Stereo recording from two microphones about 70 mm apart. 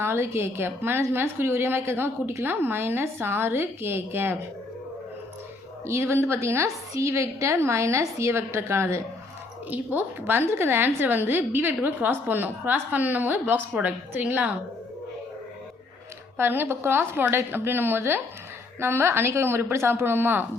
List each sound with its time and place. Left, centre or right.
0.0 s a woman's voice: right
5.8 s a woman's voice: right
9.6 s a woman's voice: right
16.4 s a woman's voice: right